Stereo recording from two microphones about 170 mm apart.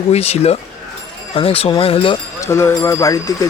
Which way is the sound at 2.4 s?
15° left (ahead or behind).